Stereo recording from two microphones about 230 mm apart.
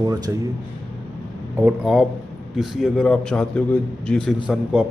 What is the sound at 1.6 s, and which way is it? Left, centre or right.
A man's voice, centre.